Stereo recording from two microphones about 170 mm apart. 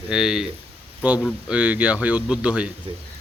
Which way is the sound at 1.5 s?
5° right (ahead or behind).